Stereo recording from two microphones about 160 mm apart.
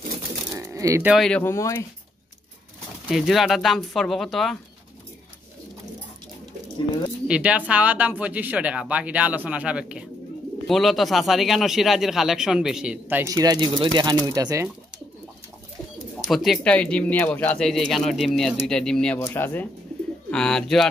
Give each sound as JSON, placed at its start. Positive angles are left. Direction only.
{"t": 0.6, "sound": "a sound", "side_deg": -20}
{"t": 1.0, "sound": "speech", "side_deg": 0}
{"t": 1.4, "sound": "speech", "side_deg": 20}
{"t": 3.1, "sound": "speech", "side_deg": 0}
{"t": 7.2, "sound": "speech", "side_deg": -5}
{"t": 13.3, "sound": "speech", "side_deg": -25}
{"t": 16.3, "sound": "speech", "side_deg": 0}
{"t": 19.1, "sound": "speech", "side_deg": 15}